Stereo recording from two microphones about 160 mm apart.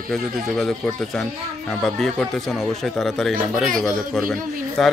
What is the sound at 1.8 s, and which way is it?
Speech, centre (ahead or behind).